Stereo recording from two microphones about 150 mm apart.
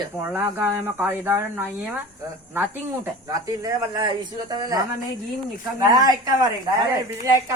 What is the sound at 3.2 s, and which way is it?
Speech, 20° right (ahead or behind).